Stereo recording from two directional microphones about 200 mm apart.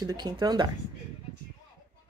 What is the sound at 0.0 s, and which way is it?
Speech, 20° right (ahead or behind).